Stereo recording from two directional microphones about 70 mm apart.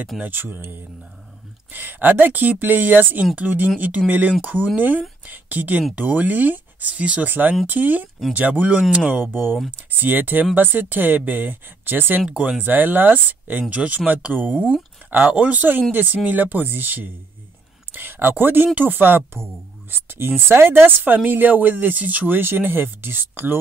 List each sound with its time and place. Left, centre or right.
0.2 s a woman's voice: right